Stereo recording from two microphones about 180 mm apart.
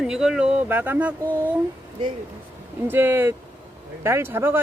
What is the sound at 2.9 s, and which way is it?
Speech, 10° right (ahead or behind).